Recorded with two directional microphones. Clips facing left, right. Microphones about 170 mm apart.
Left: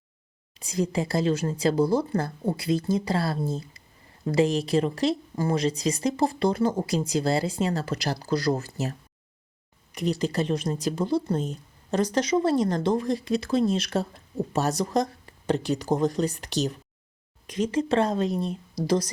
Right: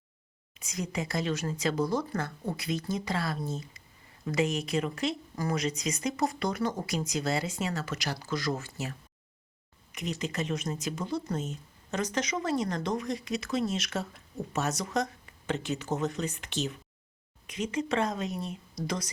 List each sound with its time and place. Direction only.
0.5 s speech: 30° left (ahead or behind)